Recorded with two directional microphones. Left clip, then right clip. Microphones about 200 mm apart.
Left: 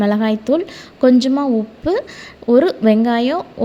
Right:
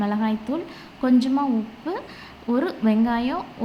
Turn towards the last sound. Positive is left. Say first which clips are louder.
# left 7 dB
turn(degrees=35)  # may be behind; listen again after turning